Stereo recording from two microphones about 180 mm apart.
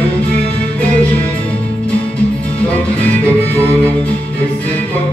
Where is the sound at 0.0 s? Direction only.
10° left (ahead or behind).